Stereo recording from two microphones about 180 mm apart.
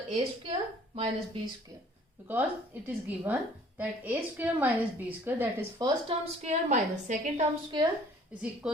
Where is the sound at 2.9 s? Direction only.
10° right (ahead or behind).